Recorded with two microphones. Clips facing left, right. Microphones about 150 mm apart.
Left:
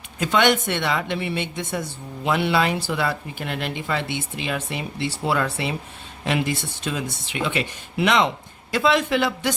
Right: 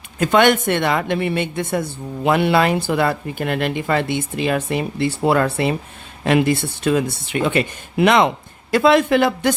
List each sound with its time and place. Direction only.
0.2 s a woman's voice: 50° right (ahead or behind)